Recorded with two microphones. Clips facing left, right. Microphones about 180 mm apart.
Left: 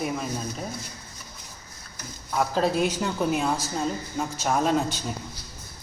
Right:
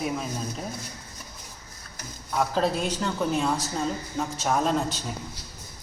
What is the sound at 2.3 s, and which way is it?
Speech, centre (ahead or behind).